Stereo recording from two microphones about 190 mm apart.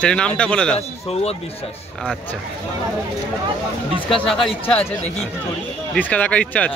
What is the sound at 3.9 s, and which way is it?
Speech, centre (ahead or behind).